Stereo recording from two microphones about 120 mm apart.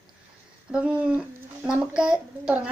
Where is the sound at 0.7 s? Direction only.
10° right (ahead or behind).